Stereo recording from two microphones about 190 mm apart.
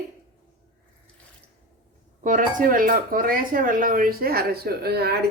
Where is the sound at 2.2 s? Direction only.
45° right (ahead or behind).